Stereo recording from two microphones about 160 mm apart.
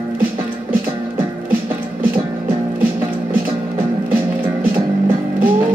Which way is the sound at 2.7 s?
15° right (ahead or behind).